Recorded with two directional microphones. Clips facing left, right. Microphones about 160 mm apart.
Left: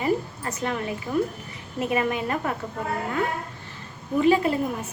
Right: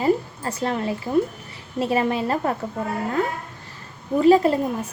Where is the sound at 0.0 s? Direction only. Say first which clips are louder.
Right 4 dB; 35° right (ahead or behind).